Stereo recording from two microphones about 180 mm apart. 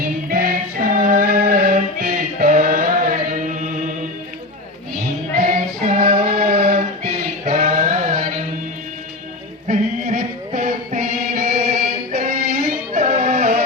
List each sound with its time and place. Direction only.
0.0 s music: 55° right (ahead or behind)
3.3 s chant: 45° right (ahead or behind)
5.4 s music: 45° right (ahead or behind)
6.3 s choir: 45° right (ahead or behind)
9.6 s music: 35° right (ahead or behind)
10.2 s music: 50° right (ahead or behind)